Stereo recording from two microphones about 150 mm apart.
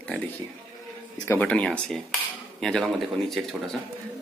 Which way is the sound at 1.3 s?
10° left (ahead or behind).